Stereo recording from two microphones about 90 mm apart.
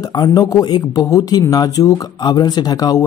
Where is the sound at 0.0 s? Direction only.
45° left (ahead or behind).